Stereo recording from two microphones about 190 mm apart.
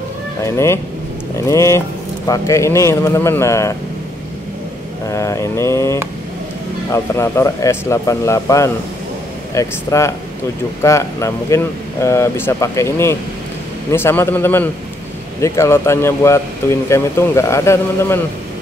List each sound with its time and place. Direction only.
0.4 s speech: 15° left (ahead or behind)
5.1 s speech: 15° left (ahead or behind)